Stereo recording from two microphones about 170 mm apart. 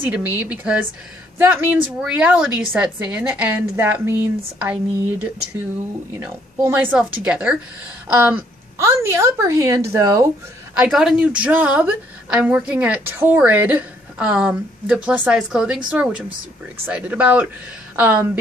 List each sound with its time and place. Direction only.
0.0 s a woman's voice: 10° right (ahead or behind)
6.1 s a woman's voice: 15° right (ahead or behind)
10.8 s a woman's voice: 5° right (ahead or behind)